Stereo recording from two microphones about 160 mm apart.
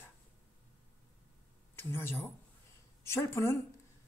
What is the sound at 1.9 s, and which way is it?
A woman's voice, 15° left (ahead or behind).